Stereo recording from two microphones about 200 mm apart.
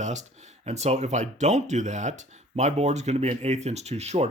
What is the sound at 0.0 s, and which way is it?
Speech, 35° right (ahead or behind).